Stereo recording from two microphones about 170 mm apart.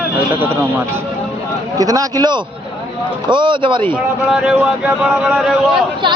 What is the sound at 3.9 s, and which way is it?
Speech, 5° right (ahead or behind).